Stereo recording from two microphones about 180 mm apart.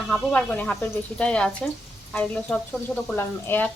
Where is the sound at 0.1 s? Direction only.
5° left (ahead or behind).